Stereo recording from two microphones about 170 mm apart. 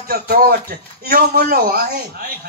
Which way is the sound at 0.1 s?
60° right (ahead or behind).